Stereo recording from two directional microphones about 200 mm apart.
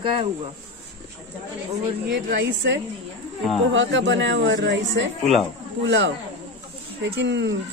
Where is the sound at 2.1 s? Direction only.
60° right (ahead or behind).